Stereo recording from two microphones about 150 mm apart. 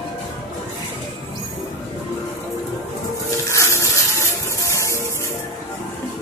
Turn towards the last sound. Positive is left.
turn(degrees=20)  # may be behind; listen again after turning